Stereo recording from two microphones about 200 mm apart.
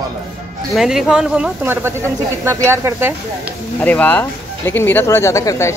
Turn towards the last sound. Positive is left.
turn(degrees=15)  # may be behind; listen again after turning